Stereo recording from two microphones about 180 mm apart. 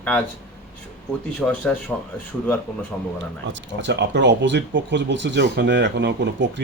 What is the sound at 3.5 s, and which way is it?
Speech, 80° right.